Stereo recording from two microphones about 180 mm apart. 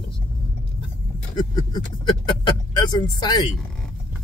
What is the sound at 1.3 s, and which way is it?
Speech, 25° left (ahead or behind).